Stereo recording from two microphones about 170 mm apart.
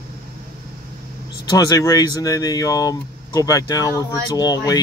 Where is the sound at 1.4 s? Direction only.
20° left (ahead or behind).